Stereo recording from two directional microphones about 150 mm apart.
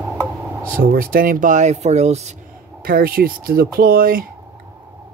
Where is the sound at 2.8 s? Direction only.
75° right (ahead or behind).